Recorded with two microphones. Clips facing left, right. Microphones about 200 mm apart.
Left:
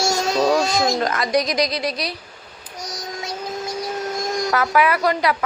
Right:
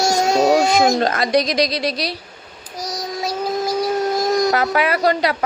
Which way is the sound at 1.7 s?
90° right.